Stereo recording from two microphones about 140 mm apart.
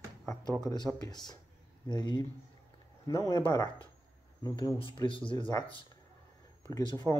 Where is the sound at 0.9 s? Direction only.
30° left (ahead or behind).